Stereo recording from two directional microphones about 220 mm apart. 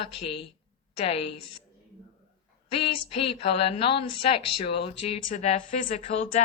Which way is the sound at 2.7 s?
25° left (ahead or behind).